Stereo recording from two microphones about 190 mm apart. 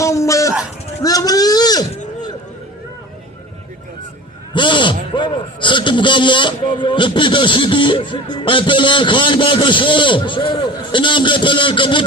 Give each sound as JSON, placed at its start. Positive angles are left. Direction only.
{"t": 0.0, "sound": "a sound", "side_deg": 15}
{"t": 1.0, "sound": "vehicle", "side_deg": 20}
{"t": 4.5, "sound": "a man's voice", "side_deg": 25}